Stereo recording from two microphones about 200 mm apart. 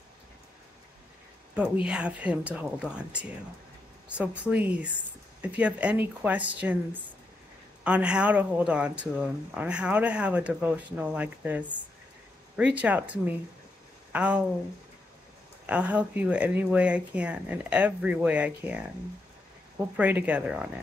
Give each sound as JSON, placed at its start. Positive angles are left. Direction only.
{"t": 1.5, "sound": "speech", "side_deg": -5}
{"t": 15.6, "sound": "speech", "side_deg": -5}